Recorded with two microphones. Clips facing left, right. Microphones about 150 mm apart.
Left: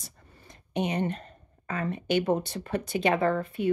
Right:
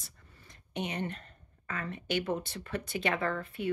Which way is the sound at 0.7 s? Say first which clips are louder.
Left 7 dB; 20° left (ahead or behind).